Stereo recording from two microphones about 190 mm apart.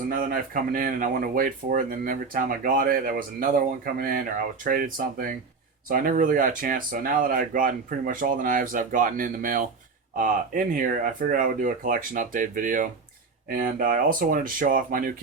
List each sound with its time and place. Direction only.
0.1 s speech: 50° right (ahead or behind)
4.6 s speech: 45° right (ahead or behind)